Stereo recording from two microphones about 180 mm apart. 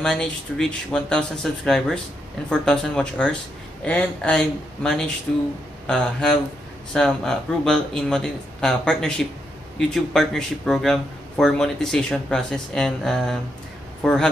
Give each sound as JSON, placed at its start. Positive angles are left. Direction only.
{"t": 0.0, "sound": "speech", "side_deg": 5}